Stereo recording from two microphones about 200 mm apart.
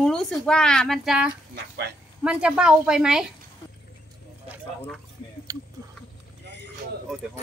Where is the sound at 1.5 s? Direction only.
55° right (ahead or behind).